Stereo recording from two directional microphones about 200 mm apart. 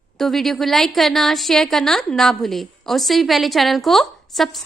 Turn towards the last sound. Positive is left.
turn(degrees=0)  # may be behind; listen again after turning